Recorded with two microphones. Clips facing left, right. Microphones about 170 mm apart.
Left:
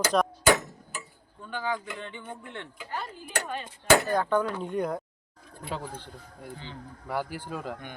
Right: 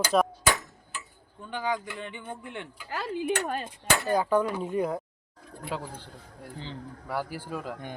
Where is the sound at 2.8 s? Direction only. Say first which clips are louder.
Right 10 dB; 90° right.